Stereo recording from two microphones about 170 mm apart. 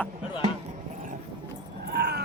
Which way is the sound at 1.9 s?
75° right (ahead or behind).